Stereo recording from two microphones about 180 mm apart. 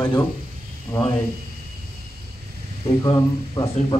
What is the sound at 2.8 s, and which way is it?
Speech, 25° left (ahead or behind).